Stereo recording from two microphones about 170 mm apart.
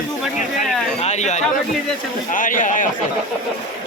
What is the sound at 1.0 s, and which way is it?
Speech, 40° left (ahead or behind).